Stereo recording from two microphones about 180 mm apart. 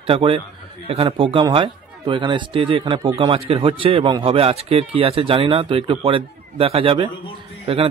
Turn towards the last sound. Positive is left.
turn(degrees=-30)  # may be behind; listen again after turning